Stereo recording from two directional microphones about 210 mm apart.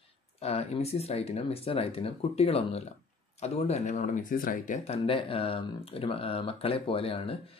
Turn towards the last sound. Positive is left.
turn(degrees=25)  # may be behind; listen again after turning